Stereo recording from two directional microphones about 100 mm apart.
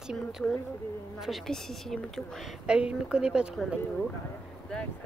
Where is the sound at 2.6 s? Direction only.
10° right (ahead or behind).